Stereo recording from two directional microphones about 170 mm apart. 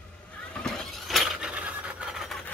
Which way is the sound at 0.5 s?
5° left (ahead or behind).